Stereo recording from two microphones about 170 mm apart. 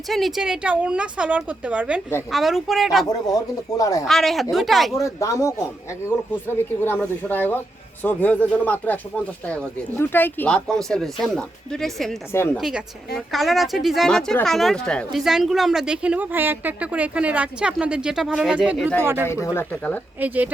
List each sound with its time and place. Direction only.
0.1 s speech: centre (ahead or behind)
3.1 s speech: 20° left (ahead or behind)
4.0 s speech: centre (ahead or behind)
4.9 s speech: 20° left (ahead or behind); by 19.3 s 15° right (ahead or behind)
19.3 s speech: 15° left (ahead or behind)
20.1 s speech: 10° right (ahead or behind)